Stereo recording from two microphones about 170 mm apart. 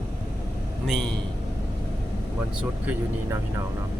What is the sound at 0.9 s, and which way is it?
Speech, centre (ahead or behind).